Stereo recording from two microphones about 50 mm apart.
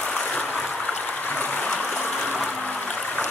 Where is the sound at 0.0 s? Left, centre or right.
Left.